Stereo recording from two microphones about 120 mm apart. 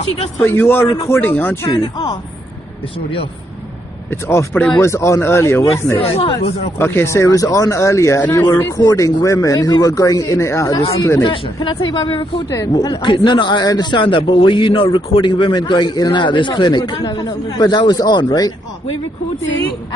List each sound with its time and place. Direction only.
0.4 s a man's voice: 15° left (ahead or behind)
1.7 s speech: 35° left (ahead or behind)
4.1 s speech: 20° left (ahead or behind)
5.9 s speech: 50° left (ahead or behind)
6.8 s speech: 20° left (ahead or behind)
8.7 s speech: 30° left (ahead or behind)
11.2 s a man's voice: 45° left (ahead or behind)
12.4 s a man's voice: 30° left (ahead or behind)